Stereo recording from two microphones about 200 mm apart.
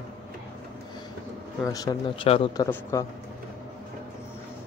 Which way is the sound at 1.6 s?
20° left (ahead or behind).